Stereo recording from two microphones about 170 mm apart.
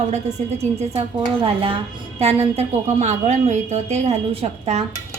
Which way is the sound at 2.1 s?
40° right (ahead or behind).